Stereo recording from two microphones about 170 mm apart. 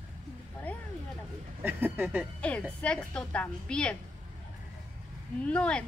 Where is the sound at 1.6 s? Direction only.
10° right (ahead or behind).